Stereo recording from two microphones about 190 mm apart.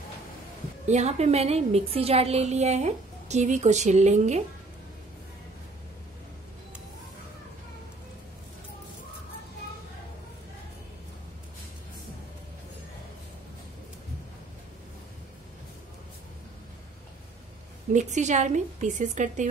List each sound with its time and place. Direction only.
0.8 s a woman's voice: 35° right (ahead or behind)
17.9 s a woman's voice: 40° right (ahead or behind)